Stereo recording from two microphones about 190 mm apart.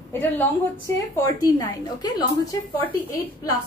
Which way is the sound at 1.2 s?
15° left (ahead or behind).